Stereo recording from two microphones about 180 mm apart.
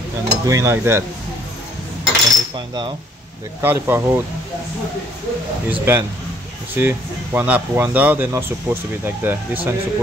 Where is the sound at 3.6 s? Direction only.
15° right (ahead or behind).